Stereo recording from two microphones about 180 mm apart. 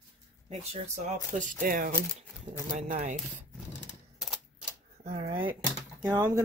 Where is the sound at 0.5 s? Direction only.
40° right (ahead or behind).